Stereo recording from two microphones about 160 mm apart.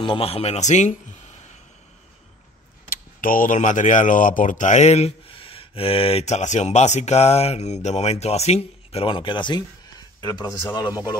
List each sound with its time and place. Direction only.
0.0 s speech: 35° left (ahead or behind)
3.2 s a man's voice: 60° left (ahead or behind); by 11.1 s 25° left (ahead or behind)